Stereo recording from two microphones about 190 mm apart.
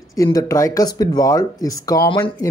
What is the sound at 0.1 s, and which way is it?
Speech, 15° left (ahead or behind).